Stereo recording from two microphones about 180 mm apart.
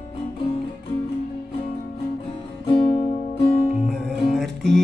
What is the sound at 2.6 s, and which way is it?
Music, 30° left (ahead or behind).